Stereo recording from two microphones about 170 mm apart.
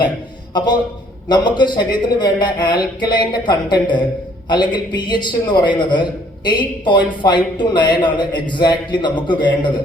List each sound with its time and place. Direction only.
0.5 s a man's voice: 25° left (ahead or behind)